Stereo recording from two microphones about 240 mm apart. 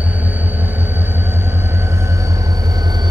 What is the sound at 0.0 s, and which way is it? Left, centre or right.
Vehicle, centre.